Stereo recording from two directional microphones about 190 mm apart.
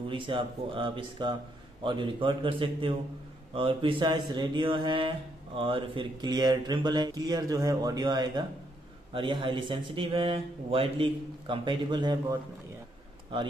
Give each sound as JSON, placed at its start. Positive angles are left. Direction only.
{"t": 0.1, "sound": "speech", "side_deg": -25}